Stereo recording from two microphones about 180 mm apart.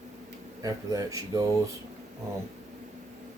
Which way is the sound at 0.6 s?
20° right (ahead or behind).